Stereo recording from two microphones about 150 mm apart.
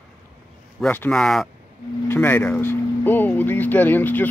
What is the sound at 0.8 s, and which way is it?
Speech, 10° left (ahead or behind).